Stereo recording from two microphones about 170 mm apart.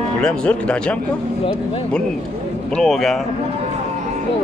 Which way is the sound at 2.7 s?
Centre (ahead or behind).